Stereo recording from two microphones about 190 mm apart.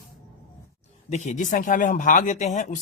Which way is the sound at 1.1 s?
40° left (ahead or behind).